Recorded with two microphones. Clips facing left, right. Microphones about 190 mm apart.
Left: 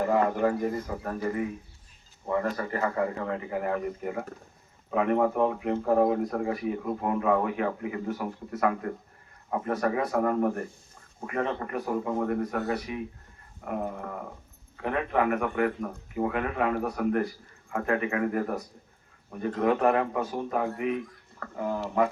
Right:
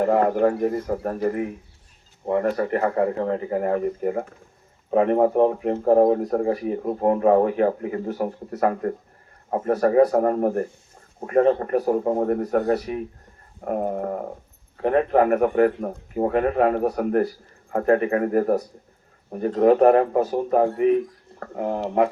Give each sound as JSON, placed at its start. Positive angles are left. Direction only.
{"t": 0.0, "sound": "speech", "side_deg": -45}
{"t": 2.3, "sound": "speech", "side_deg": -60}
{"t": 3.2, "sound": "speech", "side_deg": -40}
{"t": 13.7, "sound": "dog", "side_deg": -45}
{"t": 14.8, "sound": "speech", "side_deg": -40}
{"t": 21.5, "sound": "speech", "side_deg": -65}